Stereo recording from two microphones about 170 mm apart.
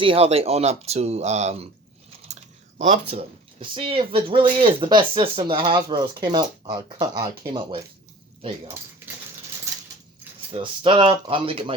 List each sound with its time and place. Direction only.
0.0 s speech: 35° right (ahead or behind)
10.5 s speech: 30° right (ahead or behind)